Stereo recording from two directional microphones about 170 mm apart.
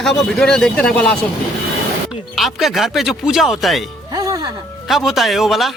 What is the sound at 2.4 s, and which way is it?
Speech, centre (ahead or behind).